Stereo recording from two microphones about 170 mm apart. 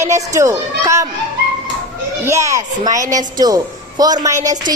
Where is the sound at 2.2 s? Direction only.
15° right (ahead or behind).